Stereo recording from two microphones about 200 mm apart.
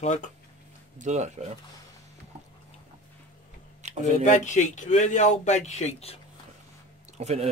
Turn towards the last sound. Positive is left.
turn(degrees=-30)  # may be behind; listen again after turning